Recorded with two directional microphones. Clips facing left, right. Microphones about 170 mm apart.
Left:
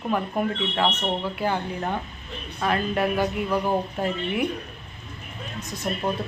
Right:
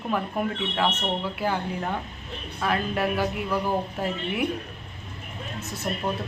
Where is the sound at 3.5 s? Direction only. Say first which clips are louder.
Left 2 dB; 20° left (ahead or behind).